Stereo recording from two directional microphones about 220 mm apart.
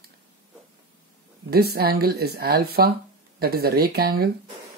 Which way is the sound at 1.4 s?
45° right (ahead or behind).